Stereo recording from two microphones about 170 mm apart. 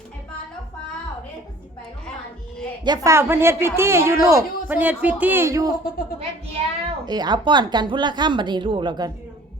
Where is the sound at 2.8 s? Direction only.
20° right (ahead or behind).